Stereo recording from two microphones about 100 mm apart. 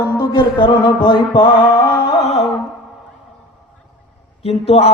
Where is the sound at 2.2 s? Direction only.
85° left.